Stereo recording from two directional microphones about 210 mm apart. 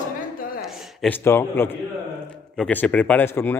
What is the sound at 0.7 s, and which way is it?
A man's voice, 10° left (ahead or behind).